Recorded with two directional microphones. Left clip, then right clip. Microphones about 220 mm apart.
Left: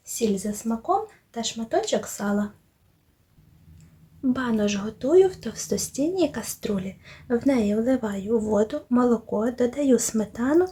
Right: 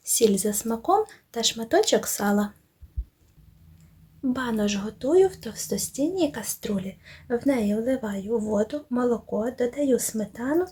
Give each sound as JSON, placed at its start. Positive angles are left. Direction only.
{"t": 0.0, "sound": "speech", "side_deg": -35}
{"t": 4.2, "sound": "a woman's voice", "side_deg": 0}